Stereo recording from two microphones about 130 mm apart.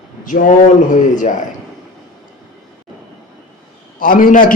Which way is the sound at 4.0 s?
90° left.